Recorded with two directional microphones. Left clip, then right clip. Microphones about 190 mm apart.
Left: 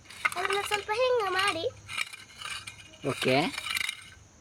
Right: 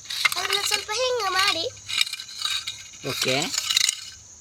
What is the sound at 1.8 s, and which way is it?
Crushing, 15° right (ahead or behind).